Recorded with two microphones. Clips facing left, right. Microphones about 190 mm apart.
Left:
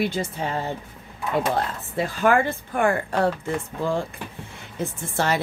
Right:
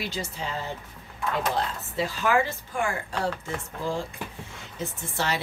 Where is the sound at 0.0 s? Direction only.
55° left (ahead or behind).